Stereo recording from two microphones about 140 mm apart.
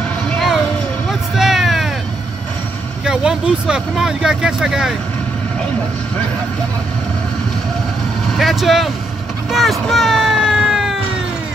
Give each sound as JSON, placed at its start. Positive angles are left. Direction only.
{"t": 1.3, "sound": "vehicle", "side_deg": 0}
{"t": 3.1, "sound": "speech", "side_deg": -5}
{"t": 8.4, "sound": "speech", "side_deg": 0}
{"t": 9.5, "sound": "a sound", "side_deg": 0}